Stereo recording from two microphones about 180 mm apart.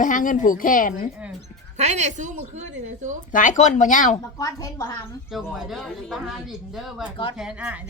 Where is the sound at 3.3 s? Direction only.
45° left (ahead or behind).